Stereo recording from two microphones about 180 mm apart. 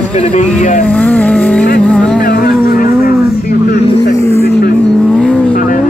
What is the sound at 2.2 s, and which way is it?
Vehicle, 60° left (ahead or behind).